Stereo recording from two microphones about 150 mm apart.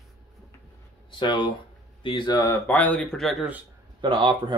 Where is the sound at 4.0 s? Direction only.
30° right (ahead or behind).